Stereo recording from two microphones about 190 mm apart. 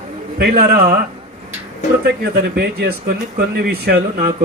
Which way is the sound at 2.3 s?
55° right (ahead or behind).